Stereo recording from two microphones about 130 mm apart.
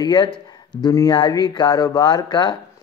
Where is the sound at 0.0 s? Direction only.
35° left (ahead or behind).